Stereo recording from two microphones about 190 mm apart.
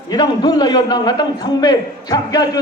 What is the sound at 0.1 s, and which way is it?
A man's voice, 20° left (ahead or behind).